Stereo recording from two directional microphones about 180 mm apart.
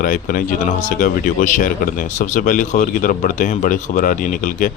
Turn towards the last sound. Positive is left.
turn(degrees=50)  # may be behind; listen again after turning